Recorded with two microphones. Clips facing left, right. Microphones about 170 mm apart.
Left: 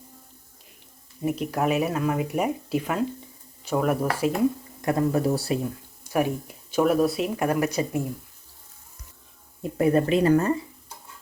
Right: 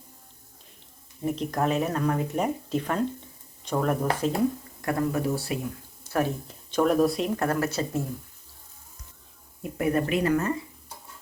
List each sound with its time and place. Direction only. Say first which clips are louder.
1.2 s speech: left 2 dB; 10° left (ahead or behind)
4.8 s speech: left 4 dB; 20° left (ahead or behind)
5.3 s speech: left 4 dB; 35° left (ahead or behind)
6.1 s speech: left 2 dB; 15° left (ahead or behind)
7.3 s speech: left 2 dB; 15° left (ahead or behind)
9.7 s speech: left 4 dB; 30° left (ahead or behind)